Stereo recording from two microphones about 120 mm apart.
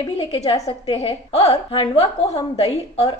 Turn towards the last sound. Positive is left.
turn(degrees=55)  # may be behind; listen again after turning